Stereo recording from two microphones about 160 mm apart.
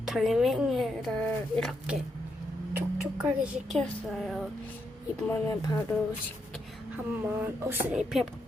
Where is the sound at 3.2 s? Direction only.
10° right (ahead or behind).